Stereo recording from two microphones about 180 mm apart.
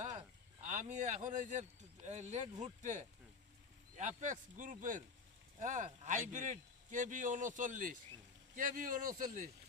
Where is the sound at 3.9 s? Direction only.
45° right (ahead or behind).